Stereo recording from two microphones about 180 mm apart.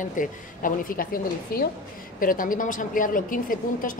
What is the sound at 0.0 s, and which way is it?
A woman's voice, 45° left (ahead or behind).